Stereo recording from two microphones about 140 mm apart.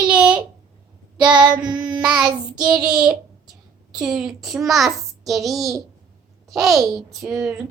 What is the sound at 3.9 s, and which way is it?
A child's voice, 5° right (ahead or behind).